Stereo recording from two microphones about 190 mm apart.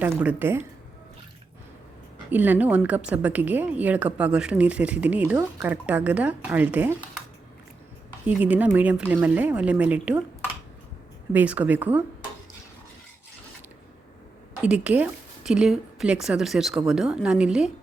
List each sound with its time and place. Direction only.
0.0 s a woman's voice: 10° right (ahead or behind)
2.3 s a woman's voice: 10° right (ahead or behind)
8.3 s a woman's voice: 10° right (ahead or behind)
11.3 s a woman's voice: 5° right (ahead or behind)
14.6 s a woman's voice: 5° right (ahead or behind)